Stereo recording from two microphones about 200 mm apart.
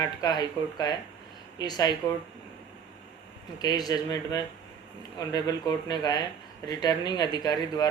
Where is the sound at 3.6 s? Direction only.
20° left (ahead or behind).